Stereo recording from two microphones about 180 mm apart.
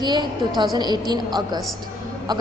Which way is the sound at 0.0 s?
25° right (ahead or behind).